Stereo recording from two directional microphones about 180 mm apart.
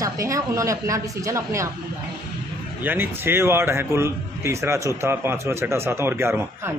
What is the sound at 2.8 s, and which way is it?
A man's voice, 10° right (ahead or behind).